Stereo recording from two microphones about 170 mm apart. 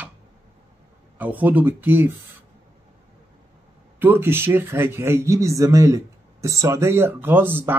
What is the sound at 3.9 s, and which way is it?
Speech, 15° right (ahead or behind).